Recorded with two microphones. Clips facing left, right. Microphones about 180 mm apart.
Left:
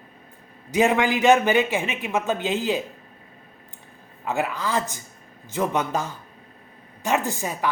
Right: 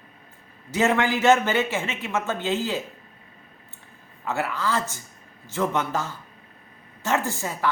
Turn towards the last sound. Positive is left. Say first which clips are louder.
# left 1 dB
turn(degrees=15)  # may be behind; listen again after turning